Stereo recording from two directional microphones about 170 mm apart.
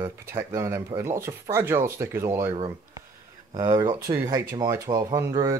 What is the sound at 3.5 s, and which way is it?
Speech, 25° right (ahead or behind).